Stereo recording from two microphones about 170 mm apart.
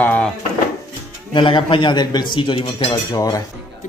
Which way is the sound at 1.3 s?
30° left (ahead or behind).